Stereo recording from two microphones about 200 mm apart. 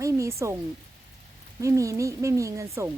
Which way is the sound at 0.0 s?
15° right (ahead or behind).